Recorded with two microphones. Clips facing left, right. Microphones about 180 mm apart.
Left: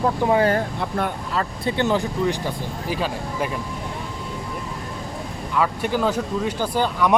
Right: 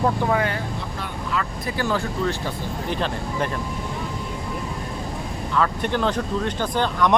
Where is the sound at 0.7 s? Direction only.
55° left (ahead or behind).